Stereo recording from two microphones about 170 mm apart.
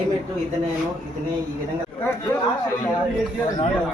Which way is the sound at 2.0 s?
10° left (ahead or behind).